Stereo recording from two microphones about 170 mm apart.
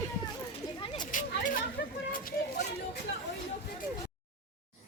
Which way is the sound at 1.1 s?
50° left (ahead or behind).